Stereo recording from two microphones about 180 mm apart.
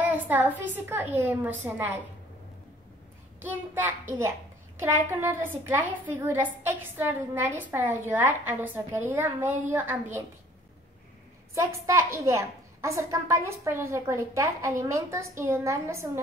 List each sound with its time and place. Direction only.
0.0 s a woman's voice: 10° right (ahead or behind)
3.3 s a woman's voice: 10° right (ahead or behind)
11.5 s a woman's voice: 15° right (ahead or behind)